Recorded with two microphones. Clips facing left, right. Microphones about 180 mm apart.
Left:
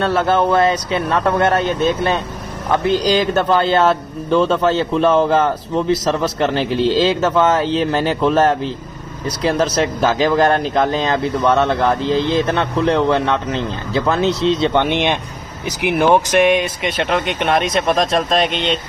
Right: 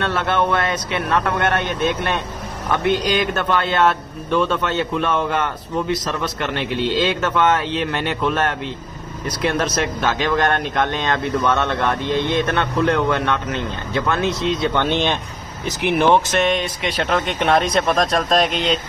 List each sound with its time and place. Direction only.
0.0 s speech: 35° left (ahead or behind)
14.7 s speech: 15° left (ahead or behind); by 18.8 s centre (ahead or behind)